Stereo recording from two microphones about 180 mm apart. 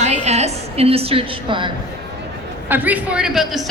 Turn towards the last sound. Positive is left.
turn(degrees=0)  # may be behind; listen again after turning